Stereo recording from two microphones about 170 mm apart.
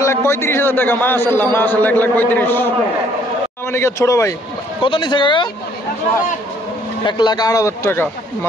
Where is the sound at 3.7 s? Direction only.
15° left (ahead or behind).